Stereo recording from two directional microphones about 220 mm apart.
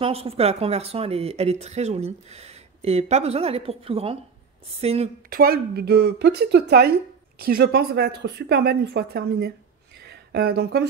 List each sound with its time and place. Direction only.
0.0 s speech: 25° right (ahead or behind)
5.3 s a woman's voice: 45° right (ahead or behind)